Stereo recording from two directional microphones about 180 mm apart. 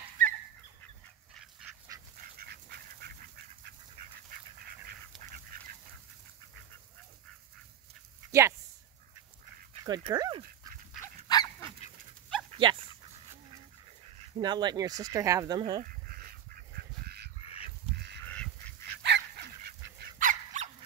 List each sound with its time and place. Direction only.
0.2 s fowl: 45° right (ahead or behind)
1.3 s goose: 5° right (ahead or behind)
2.3 s goose: 60° right (ahead or behind)
8.3 s a sound: 15° right (ahead or behind)
9.8 s speech: 25° right (ahead or behind)
11.0 s goose: 20° left (ahead or behind)
12.4 s dog: 25° right (ahead or behind)
14.3 s speech: 25° right (ahead or behind)
15.8 s goose: 55° right (ahead or behind)
17.4 s duck: 35° left (ahead or behind)
17.9 s goose: 70° right (ahead or behind)
18.2 s goose: 10° left (ahead or behind)
19.0 s dog: 70° right (ahead or behind)
20.0 s goose: 45° right (ahead or behind)